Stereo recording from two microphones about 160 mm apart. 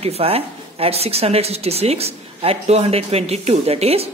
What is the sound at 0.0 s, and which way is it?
A man's voice, 35° right (ahead or behind).